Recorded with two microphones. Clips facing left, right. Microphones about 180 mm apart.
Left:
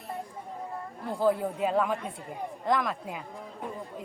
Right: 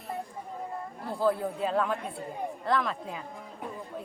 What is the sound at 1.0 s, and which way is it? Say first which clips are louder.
A woman's voice: left 2 dB; 15° left (ahead or behind).